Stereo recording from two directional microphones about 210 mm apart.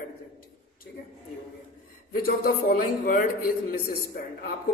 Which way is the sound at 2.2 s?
45° left (ahead or behind).